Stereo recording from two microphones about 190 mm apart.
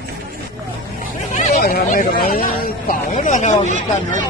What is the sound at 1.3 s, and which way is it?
Speech, 40° left (ahead or behind).